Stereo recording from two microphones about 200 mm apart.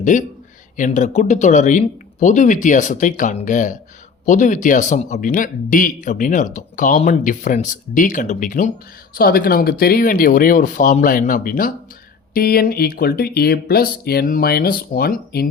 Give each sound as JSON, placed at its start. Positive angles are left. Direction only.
{"t": 0.0, "sound": "speech", "side_deg": 40}